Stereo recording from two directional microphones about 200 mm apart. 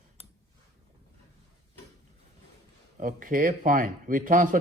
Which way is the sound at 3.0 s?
40° right (ahead or behind).